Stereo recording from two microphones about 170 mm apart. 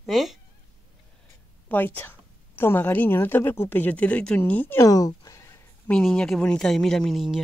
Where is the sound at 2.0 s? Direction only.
15° left (ahead or behind).